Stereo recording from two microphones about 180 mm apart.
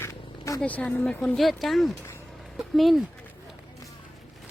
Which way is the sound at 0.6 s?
5° left (ahead or behind).